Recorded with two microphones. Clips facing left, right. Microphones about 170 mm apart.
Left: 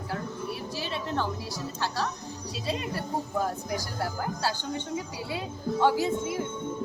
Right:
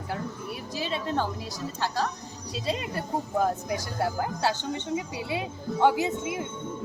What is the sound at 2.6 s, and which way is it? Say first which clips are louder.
Speech: right 1 dB; 20° right (ahead or behind).